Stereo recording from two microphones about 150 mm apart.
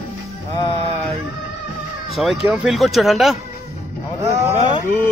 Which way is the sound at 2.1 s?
Centre (ahead or behind).